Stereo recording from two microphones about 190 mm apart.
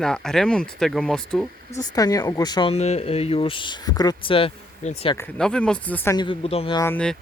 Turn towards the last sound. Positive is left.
turn(degrees=5)  # may be behind; listen again after turning